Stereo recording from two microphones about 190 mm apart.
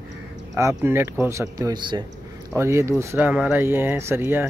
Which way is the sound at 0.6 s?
15° right (ahead or behind).